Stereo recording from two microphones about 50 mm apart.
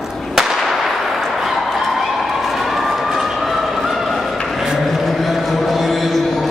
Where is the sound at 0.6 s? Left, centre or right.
Centre.